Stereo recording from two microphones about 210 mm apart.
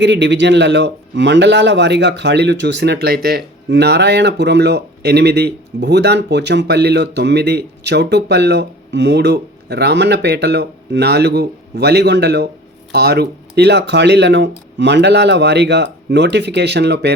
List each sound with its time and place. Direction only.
0.0 s speech: 55° right (ahead or behind)